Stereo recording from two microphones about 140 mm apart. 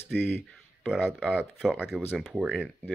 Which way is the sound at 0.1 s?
15° left (ahead or behind).